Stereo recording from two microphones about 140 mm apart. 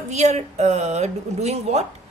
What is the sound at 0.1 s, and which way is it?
A woman's voice, 55° right (ahead or behind).